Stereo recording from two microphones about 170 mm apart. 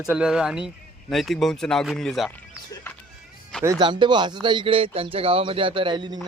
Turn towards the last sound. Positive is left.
turn(degrees=-25)  # may be behind; listen again after turning